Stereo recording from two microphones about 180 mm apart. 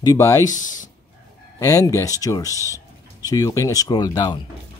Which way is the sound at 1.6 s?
15° left (ahead or behind).